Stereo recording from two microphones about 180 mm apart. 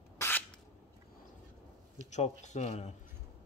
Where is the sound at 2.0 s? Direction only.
40° left (ahead or behind).